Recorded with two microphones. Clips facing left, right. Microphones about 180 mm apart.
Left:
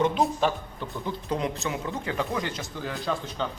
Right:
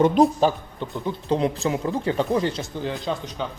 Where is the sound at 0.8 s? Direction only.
20° right (ahead or behind).